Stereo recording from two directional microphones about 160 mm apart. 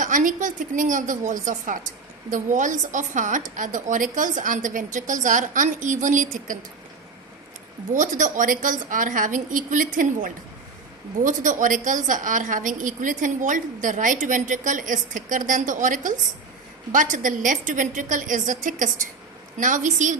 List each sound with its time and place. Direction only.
0.0 s a woman's voice: 55° right (ahead or behind)
7.9 s a woman's voice: 50° right (ahead or behind)